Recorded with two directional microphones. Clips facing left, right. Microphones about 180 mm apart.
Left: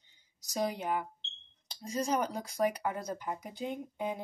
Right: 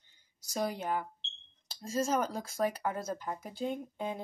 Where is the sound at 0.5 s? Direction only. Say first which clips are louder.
Left 1 dB; 15° left (ahead or behind).